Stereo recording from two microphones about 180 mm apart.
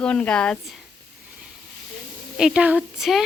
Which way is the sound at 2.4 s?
5° right (ahead or behind).